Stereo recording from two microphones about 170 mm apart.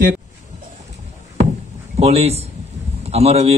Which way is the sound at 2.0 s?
35° right (ahead or behind).